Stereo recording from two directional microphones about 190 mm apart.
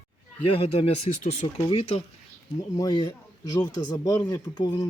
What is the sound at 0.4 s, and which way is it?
Speech, 30° left (ahead or behind).